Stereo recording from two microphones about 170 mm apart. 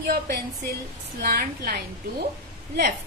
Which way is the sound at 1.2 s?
60° right (ahead or behind).